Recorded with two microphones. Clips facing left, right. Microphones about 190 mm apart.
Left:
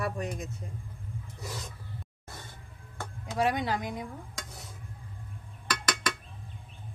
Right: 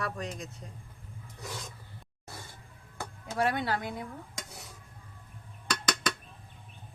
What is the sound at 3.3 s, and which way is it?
Speech, 10° left (ahead or behind).